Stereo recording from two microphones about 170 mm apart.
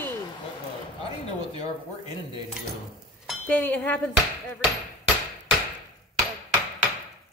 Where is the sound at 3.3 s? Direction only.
10° left (ahead or behind).